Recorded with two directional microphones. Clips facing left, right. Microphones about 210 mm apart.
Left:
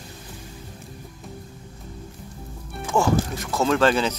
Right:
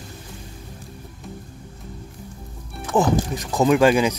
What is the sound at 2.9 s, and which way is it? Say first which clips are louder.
Speech: right 2 dB; 15° right (ahead or behind).